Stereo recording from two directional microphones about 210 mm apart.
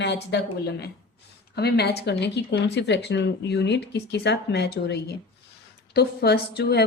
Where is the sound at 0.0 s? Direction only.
55° left (ahead or behind).